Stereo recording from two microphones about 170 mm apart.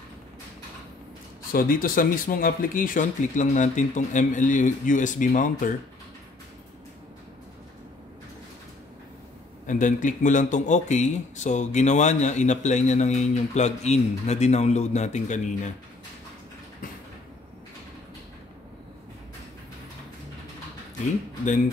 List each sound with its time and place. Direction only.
1.5 s speech: 55° left (ahead or behind)
9.7 s speech: 50° left (ahead or behind)